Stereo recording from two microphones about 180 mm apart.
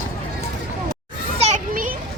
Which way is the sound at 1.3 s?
40° right (ahead or behind).